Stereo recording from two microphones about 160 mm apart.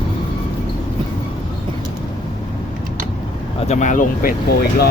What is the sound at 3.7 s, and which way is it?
Speech, 50° left (ahead or behind).